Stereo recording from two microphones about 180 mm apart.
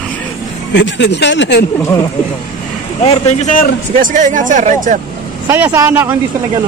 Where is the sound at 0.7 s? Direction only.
80° left.